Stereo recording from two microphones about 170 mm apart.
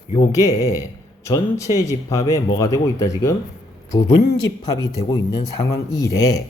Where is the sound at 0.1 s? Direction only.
20° left (ahead or behind).